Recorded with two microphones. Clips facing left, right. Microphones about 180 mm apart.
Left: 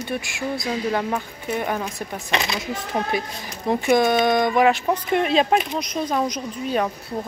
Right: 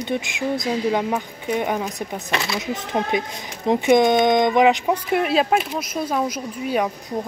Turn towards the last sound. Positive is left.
turn(degrees=-10)  # may be behind; listen again after turning